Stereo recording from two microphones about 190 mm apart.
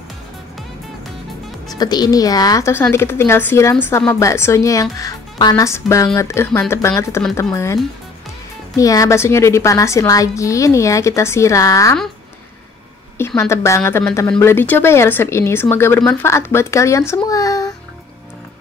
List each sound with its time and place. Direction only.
1.7 s a woman's voice: 20° left (ahead or behind)
13.4 s a woman's voice: 15° left (ahead or behind)